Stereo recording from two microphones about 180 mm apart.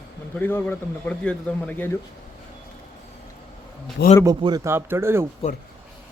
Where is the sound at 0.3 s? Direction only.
10° left (ahead or behind).